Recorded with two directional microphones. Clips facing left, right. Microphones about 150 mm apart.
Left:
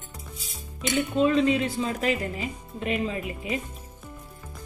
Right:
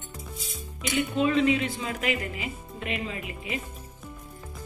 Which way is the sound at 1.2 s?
35° left (ahead or behind).